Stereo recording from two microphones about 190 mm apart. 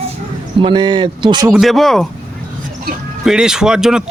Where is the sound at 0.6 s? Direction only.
25° right (ahead or behind).